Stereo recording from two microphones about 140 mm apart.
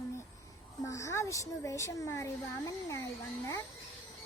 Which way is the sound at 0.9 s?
20° left (ahead or behind).